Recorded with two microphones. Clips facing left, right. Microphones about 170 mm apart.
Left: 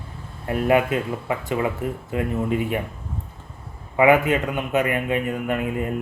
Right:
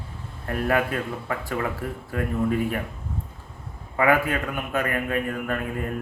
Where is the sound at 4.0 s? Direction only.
20° left (ahead or behind).